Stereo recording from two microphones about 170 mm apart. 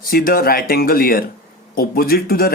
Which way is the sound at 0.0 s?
60° left (ahead or behind).